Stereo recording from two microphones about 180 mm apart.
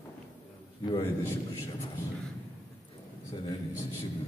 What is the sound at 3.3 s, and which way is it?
Speech, 25° left (ahead or behind).